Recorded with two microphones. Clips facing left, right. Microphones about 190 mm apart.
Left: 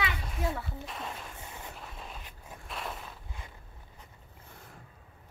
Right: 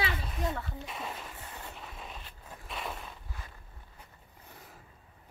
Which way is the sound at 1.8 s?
Centre (ahead or behind).